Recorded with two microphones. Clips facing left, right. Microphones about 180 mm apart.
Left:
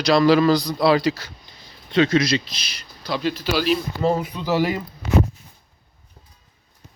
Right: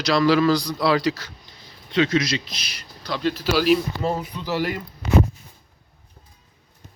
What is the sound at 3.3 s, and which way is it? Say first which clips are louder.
Speech: right 4 dB; 5° right (ahead or behind).